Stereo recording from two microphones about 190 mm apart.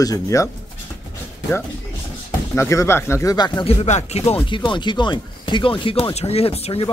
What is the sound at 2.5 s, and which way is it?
Speech, 15° left (ahead or behind).